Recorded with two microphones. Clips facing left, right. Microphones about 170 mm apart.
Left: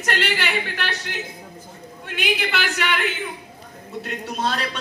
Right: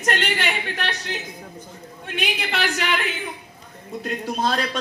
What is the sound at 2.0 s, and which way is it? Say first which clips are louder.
Speech: left 3 dB; 35° right (ahead or behind).